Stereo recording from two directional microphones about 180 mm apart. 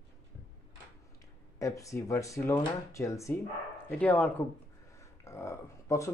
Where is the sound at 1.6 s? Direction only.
15° left (ahead or behind).